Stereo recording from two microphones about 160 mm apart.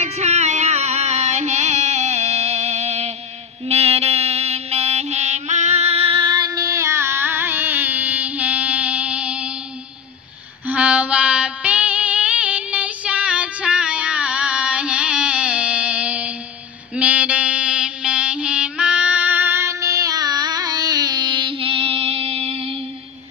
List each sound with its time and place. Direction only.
0.0 s music: 45° right (ahead or behind); by 9.5 s 5° right (ahead or behind)
10.7 s music: 10° right (ahead or behind)
16.9 s mantra: 10° right (ahead or behind); by 22.8 s 35° right (ahead or behind)